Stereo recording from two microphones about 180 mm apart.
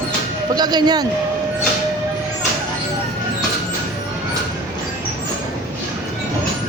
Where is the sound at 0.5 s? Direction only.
20° right (ahead or behind).